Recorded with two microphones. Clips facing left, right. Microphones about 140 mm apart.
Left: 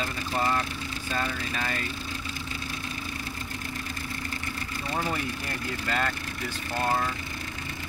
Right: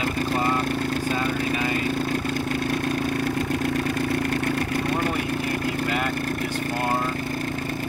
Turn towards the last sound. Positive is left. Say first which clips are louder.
# right 4 dB
turn(degrees=-15)  # may be behind; listen again after turning